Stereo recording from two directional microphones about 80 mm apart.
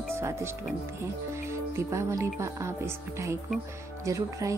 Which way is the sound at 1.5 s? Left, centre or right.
Right.